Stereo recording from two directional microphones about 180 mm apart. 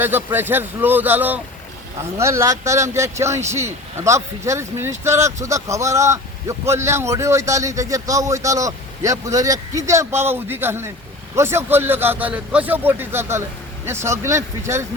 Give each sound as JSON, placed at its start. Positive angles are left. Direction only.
{"t": 0.0, "sound": "a man's voice", "side_deg": -10}